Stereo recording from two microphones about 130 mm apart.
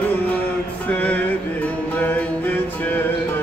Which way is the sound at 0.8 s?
10° left (ahead or behind).